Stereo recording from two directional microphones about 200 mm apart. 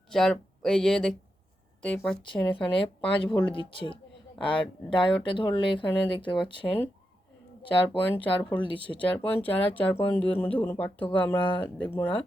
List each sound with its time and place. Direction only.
0.1 s speech: centre (ahead or behind)
3.4 s speech: 25° left (ahead or behind)
8.1 s speech: 10° left (ahead or behind)
8.7 s speech: 25° left (ahead or behind)
9.0 s speech: 5° left (ahead or behind)